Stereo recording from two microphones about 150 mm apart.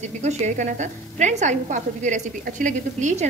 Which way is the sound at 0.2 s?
50° right (ahead or behind).